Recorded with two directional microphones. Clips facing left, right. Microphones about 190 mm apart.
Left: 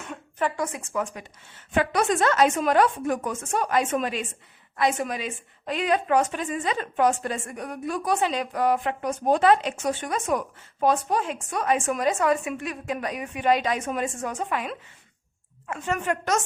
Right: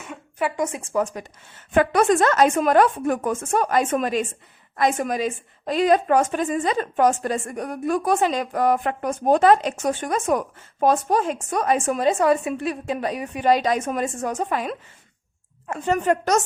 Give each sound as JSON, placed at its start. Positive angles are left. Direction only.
{"t": 0.0, "sound": "a sound", "side_deg": -10}
{"t": 0.5, "sound": "a woman's voice", "side_deg": -25}
{"t": 1.7, "sound": "a woman's voice", "side_deg": -50}